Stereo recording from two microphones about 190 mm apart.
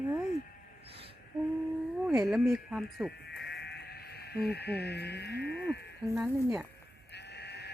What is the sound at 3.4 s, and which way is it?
Sheep, 60° left (ahead or behind).